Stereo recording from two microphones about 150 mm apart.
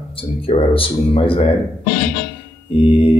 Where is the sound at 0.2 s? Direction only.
40° left (ahead or behind).